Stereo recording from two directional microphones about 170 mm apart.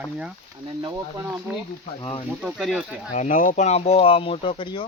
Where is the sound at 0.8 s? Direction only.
20° right (ahead or behind).